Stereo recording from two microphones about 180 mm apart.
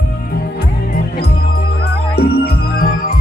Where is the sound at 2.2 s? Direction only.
60° left (ahead or behind).